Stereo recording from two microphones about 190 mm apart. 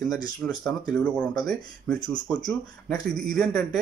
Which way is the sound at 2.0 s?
20° left (ahead or behind).